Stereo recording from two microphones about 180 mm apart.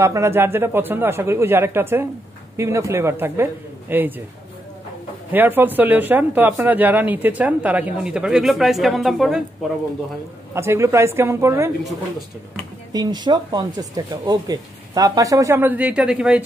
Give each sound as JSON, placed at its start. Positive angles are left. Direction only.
{"t": 0.0, "sound": "speech", "side_deg": -15}
{"t": 5.3, "sound": "speech", "side_deg": -10}
{"t": 10.5, "sound": "speech", "side_deg": -15}
{"t": 12.9, "sound": "speech", "side_deg": -25}